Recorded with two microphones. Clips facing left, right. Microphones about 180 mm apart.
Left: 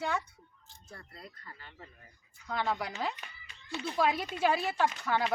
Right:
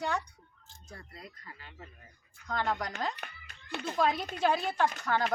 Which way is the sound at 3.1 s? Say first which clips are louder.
Right 4 dB; 60° right (ahead or behind).